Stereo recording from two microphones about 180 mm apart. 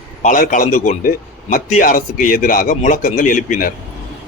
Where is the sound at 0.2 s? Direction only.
45° left (ahead or behind).